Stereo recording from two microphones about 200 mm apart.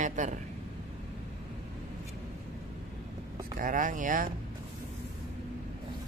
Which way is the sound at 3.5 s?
40° right (ahead or behind).